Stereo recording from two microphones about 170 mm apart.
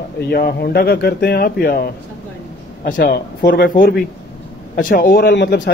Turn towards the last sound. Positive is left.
turn(degrees=90)